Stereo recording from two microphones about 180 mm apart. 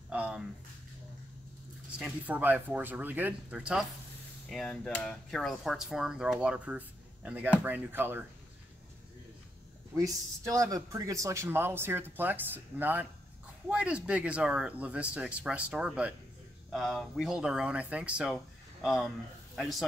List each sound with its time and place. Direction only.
0.1 s a sound: 5° right (ahead or behind)
2.0 s speech: 5° right (ahead or behind)
9.9 s speech: 20° right (ahead or behind); by 19.8 s centre (ahead or behind)